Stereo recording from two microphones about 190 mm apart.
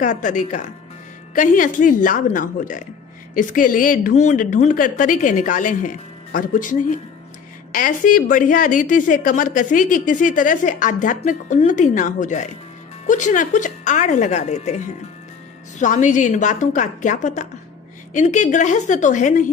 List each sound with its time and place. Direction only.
0.0 s a woman's voice: 40° left (ahead or behind)
15.8 s speech: 40° left (ahead or behind)